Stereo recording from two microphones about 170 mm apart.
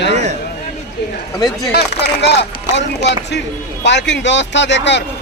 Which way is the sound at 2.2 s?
90° left.